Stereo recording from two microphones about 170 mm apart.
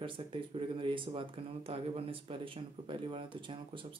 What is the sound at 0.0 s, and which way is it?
Speech, 30° right (ahead or behind).